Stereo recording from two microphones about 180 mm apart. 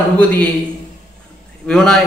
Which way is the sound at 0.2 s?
10° left (ahead or behind).